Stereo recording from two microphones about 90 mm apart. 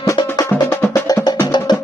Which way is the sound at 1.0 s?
55° left (ahead or behind).